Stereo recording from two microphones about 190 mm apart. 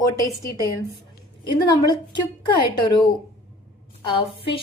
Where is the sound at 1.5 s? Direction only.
20° left (ahead or behind).